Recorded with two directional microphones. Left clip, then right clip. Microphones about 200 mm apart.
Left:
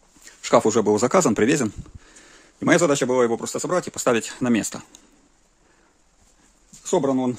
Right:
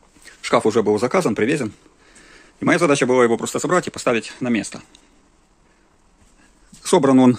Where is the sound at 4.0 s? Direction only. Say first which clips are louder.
Right 1 dB; 30° left (ahead or behind).